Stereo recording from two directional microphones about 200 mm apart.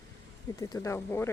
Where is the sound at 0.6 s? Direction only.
15° left (ahead or behind).